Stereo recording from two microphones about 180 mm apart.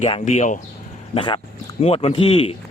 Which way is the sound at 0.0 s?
35° left (ahead or behind).